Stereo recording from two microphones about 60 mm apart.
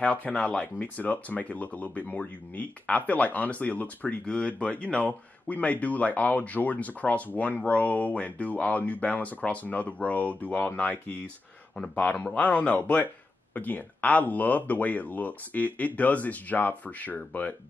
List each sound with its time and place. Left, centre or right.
0.0 s speech: left